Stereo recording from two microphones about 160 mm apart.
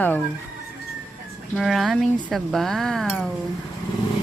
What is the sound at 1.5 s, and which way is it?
Speech, centre (ahead or behind).